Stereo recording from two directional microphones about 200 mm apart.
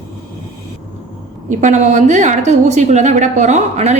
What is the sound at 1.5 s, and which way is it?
A woman's voice, 35° right (ahead or behind).